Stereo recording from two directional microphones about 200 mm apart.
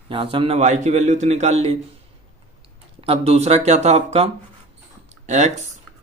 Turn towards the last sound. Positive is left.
turn(degrees=-35)  # may be behind; listen again after turning